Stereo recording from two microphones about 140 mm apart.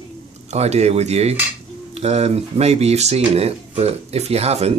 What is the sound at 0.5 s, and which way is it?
Speech, 50° right (ahead or behind).